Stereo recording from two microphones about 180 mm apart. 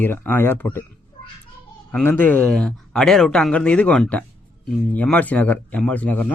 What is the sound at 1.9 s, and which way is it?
Speech, 10° left (ahead or behind).